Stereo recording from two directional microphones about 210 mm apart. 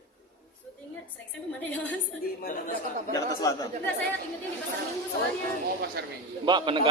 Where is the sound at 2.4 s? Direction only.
40° left (ahead or behind).